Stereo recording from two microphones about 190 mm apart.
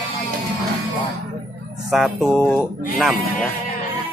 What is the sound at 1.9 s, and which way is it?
Speech, centre (ahead or behind).